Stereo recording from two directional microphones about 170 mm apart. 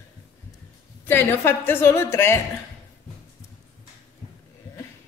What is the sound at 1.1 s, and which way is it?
A woman's voice, 15° left (ahead or behind).